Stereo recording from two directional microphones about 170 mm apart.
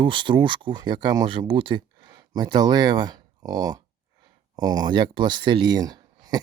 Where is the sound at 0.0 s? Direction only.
30° right (ahead or behind).